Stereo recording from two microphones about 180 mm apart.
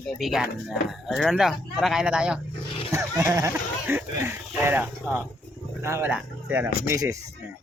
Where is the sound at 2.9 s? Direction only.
15° right (ahead or behind).